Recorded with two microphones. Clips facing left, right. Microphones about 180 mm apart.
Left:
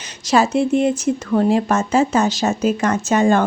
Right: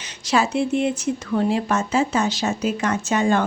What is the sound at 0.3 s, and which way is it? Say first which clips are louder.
A woman's voice: left 4 dB; 45° left (ahead or behind).